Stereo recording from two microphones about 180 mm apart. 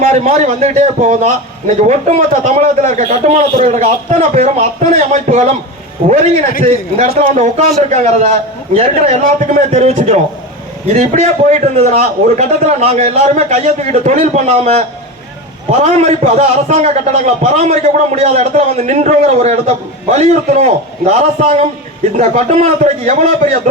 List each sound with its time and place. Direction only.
0.1 s a man's voice: 35° right (ahead or behind)
6.6 s a man's voice: 40° right (ahead or behind)